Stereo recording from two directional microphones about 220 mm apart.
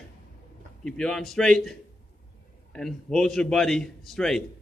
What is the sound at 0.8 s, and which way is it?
A man's voice, 5° left (ahead or behind).